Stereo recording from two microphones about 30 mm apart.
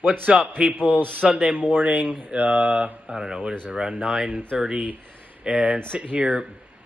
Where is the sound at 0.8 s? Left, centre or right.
Right.